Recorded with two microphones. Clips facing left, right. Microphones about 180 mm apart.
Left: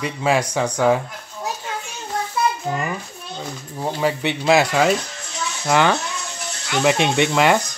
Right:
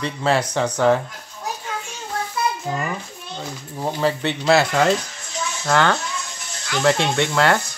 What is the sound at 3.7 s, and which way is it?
Speech, 10° left (ahead or behind).